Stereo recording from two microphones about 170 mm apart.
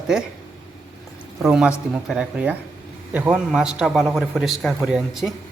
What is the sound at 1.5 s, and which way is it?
A man's voice, 5° right (ahead or behind).